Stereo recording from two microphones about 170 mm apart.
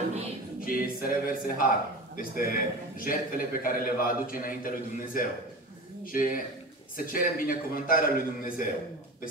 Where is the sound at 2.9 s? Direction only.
55° left (ahead or behind).